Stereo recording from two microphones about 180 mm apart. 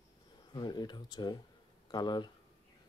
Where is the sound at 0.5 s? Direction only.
25° left (ahead or behind).